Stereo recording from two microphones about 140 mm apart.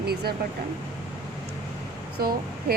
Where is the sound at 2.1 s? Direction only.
90° right.